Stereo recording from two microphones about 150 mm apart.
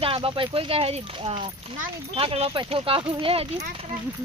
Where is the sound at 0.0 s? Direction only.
40° right (ahead or behind).